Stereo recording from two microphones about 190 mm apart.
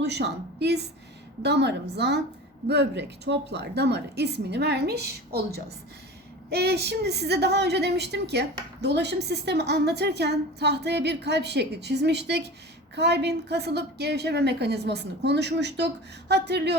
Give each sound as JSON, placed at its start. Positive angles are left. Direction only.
{"t": 0.0, "sound": "a woman's voice", "side_deg": -60}
{"t": 6.5, "sound": "a woman's voice", "side_deg": -60}